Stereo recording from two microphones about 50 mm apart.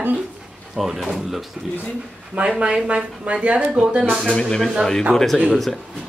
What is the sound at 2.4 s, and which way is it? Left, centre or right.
Speech, right.